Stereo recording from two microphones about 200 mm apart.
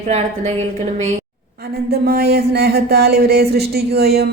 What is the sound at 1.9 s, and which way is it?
Speech, 55° right (ahead or behind).